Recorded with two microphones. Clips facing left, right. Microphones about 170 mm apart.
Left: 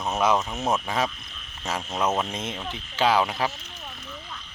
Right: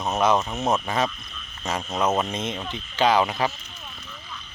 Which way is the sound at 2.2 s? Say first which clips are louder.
Right 3 dB; centre (ahead or behind).